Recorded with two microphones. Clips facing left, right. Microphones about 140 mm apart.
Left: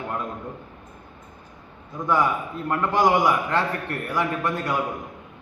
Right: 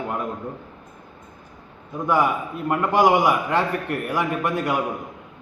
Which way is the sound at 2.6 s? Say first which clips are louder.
Right 3 dB; 15° right (ahead or behind).